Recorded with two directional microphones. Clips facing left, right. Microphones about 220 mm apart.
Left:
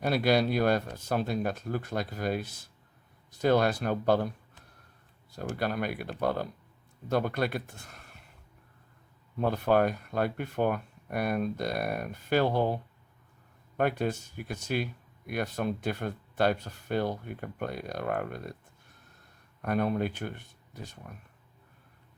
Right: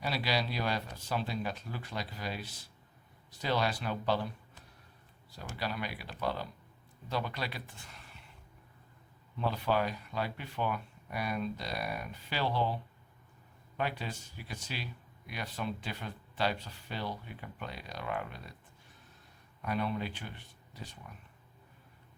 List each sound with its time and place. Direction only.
0.0 s speech: 50° left (ahead or behind)
5.3 s speech: 50° left (ahead or behind)
9.4 s speech: 50° left (ahead or behind)
19.6 s speech: 50° left (ahead or behind)